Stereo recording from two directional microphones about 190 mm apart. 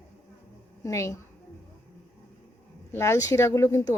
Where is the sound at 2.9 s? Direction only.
15° left (ahead or behind).